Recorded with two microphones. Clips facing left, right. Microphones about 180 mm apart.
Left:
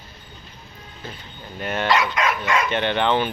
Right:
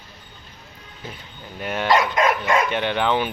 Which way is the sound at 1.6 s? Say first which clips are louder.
Left 1 dB; 5° right (ahead or behind).